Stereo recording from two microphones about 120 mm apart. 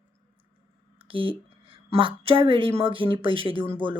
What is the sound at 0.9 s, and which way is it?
Speech, 50° right (ahead or behind).